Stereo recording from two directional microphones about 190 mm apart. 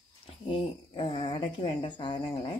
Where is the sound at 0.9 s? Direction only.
30° left (ahead or behind).